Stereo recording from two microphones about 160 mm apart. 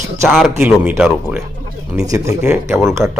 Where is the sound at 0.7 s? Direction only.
5° right (ahead or behind).